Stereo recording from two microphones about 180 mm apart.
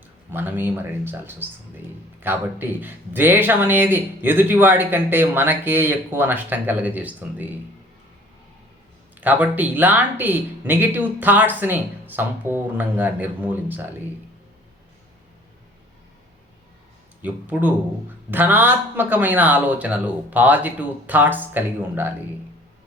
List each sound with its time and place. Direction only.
0.3 s speech: 10° right (ahead or behind)
9.2 s speech: 10° right (ahead or behind)
17.2 s speech: 10° right (ahead or behind)